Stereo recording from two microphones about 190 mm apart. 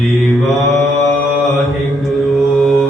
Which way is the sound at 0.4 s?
Centre (ahead or behind).